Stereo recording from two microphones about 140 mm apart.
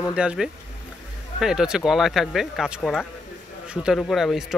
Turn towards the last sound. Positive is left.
turn(degrees=0)  # may be behind; listen again after turning